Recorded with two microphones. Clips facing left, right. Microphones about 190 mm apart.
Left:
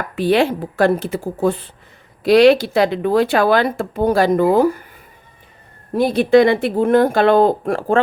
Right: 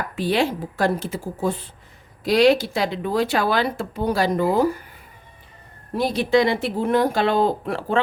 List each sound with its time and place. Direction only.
0.2 s speech: 60° left (ahead or behind)
6.0 s speech: 55° left (ahead or behind)